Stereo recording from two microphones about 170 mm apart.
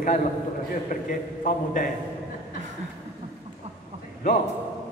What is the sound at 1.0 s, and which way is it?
Speech, 55° left (ahead or behind).